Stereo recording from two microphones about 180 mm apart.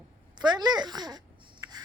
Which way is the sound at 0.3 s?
25° right (ahead or behind).